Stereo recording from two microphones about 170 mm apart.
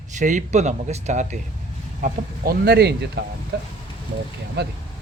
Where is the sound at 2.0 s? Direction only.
55° right (ahead or behind); by 3.1 s 75° right (ahead or behind).